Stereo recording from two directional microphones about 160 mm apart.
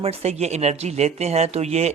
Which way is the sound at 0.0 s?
40° right (ahead or behind).